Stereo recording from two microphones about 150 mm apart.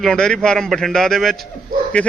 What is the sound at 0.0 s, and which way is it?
A man's voice, 5° left (ahead or behind).